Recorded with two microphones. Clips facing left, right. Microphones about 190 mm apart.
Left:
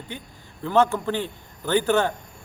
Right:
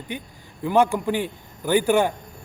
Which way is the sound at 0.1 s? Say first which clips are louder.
Right 4 dB; 15° right (ahead or behind).